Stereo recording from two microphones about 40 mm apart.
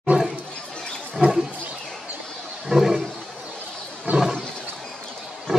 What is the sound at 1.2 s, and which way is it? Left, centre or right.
Roaring cats, right.